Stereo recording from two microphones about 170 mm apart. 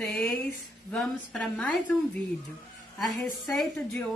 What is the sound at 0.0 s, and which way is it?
A woman's voice, centre (ahead or behind).